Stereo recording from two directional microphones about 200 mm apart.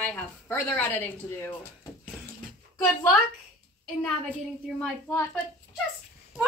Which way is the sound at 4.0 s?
5° left (ahead or behind).